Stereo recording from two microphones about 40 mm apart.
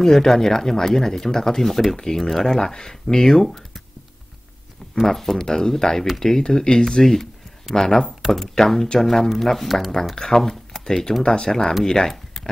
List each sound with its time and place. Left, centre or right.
0.0 s speech: centre
5.0 s speech: centre